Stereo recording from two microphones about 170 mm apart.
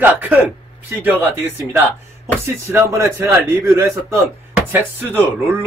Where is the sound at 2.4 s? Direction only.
15° right (ahead or behind).